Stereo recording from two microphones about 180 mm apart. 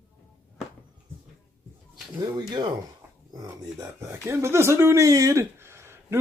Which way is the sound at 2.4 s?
25° right (ahead or behind).